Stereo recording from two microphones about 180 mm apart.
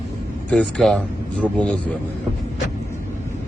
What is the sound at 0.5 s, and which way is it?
A man's voice, 5° left (ahead or behind).